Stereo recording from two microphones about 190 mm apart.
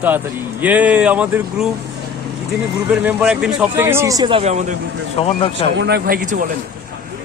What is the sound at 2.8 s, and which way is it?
A man's voice, 5° right (ahead or behind).